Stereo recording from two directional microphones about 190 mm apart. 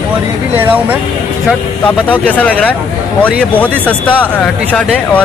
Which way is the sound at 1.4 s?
5° left (ahead or behind).